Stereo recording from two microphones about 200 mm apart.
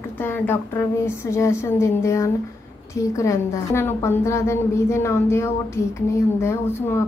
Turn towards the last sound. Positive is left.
turn(degrees=10)  # may be behind; listen again after turning